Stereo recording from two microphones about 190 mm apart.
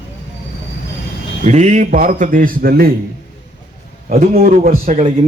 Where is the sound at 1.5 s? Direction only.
40° right (ahead or behind).